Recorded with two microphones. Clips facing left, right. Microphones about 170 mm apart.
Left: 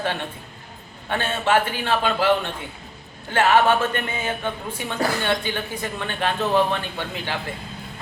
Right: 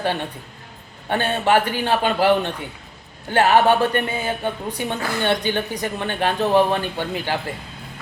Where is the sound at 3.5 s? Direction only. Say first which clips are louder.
Right 3 dB; 15° right (ahead or behind).